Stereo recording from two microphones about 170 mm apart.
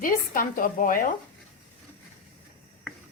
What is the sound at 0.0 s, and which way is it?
A woman's voice, 55° left (ahead or behind).